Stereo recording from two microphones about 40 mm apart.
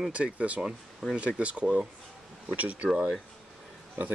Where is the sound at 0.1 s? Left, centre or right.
Right.